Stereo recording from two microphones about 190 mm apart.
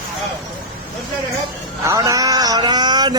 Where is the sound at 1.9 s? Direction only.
15° right (ahead or behind).